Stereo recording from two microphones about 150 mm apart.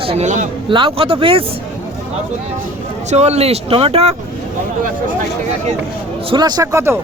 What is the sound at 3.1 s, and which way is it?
Speech, 45° right (ahead or behind).